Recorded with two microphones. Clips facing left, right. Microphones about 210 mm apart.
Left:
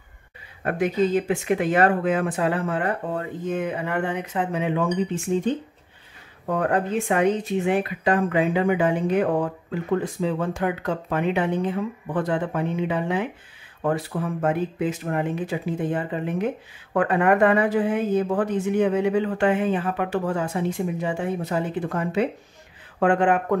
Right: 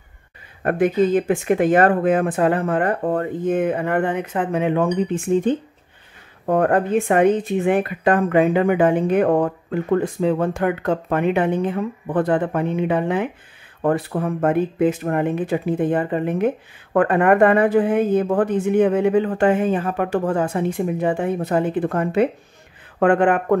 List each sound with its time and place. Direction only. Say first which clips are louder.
0.7 s speech: right 5 dB; 50° right (ahead or behind)